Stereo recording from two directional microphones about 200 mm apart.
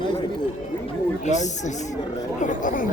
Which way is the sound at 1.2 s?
35° left (ahead or behind).